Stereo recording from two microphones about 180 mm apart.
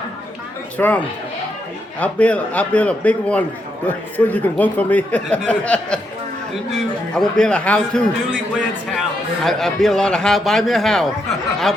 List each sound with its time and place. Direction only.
0.8 s speech: 10° left (ahead or behind)
7.2 s a man's voice: 5° left (ahead or behind)